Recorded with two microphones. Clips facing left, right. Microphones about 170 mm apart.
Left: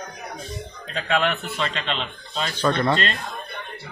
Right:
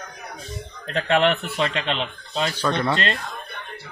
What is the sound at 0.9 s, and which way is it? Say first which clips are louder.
Speech: right 4 dB; 65° right (ahead or behind).